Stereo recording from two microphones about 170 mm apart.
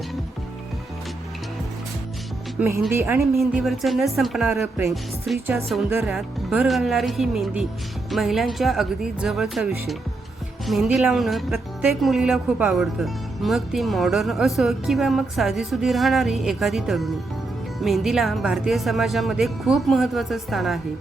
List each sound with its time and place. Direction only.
2.6 s a woman's voice: 15° right (ahead or behind)
3.3 s speech: centre (ahead or behind)